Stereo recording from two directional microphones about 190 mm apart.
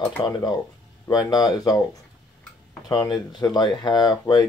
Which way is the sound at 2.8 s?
20° left (ahead or behind).